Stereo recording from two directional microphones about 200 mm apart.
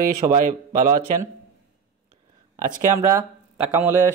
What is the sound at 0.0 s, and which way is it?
Speech, 40° right (ahead or behind).